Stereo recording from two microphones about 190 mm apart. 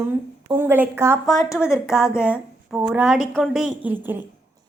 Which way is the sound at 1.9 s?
5° right (ahead or behind).